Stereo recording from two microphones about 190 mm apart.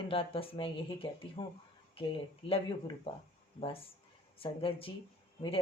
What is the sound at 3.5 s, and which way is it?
Speech, 30° left (ahead or behind).